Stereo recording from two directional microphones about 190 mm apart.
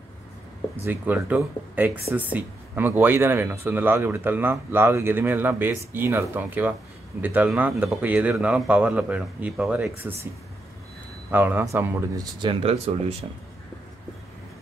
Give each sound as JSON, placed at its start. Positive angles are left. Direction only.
{"t": 0.8, "sound": "speech", "side_deg": -10}
{"t": 11.2, "sound": "speech", "side_deg": -10}